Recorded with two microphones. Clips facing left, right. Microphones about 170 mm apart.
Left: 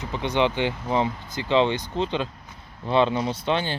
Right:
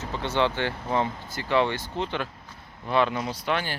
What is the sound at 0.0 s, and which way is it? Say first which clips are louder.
Speech: left 2 dB; 15° left (ahead or behind).